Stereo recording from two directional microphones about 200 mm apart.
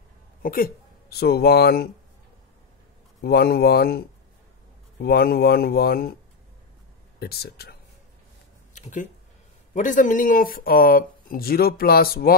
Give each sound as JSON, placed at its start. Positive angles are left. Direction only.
{"t": 0.4, "sound": "speech", "side_deg": 45}
{"t": 3.2, "sound": "speech", "side_deg": 50}
{"t": 7.2, "sound": "speech", "side_deg": 50}
{"t": 9.8, "sound": "speech", "side_deg": 40}